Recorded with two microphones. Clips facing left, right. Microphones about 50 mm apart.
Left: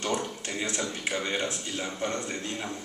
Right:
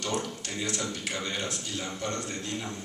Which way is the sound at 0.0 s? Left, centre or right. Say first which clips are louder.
Left 2 dB; left.